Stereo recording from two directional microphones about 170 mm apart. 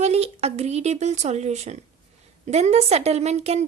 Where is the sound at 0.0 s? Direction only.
40° right (ahead or behind).